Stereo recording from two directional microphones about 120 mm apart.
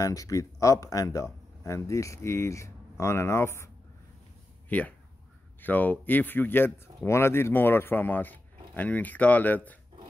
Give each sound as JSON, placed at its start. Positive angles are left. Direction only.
{"t": 0.0, "sound": "a man's voice", "side_deg": 30}